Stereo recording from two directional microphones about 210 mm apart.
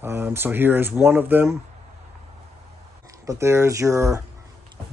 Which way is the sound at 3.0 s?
15° right (ahead or behind).